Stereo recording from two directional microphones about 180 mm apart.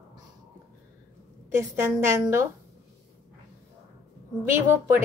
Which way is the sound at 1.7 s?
15° right (ahead or behind).